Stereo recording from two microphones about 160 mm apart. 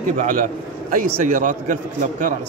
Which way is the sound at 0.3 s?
60° right (ahead or behind).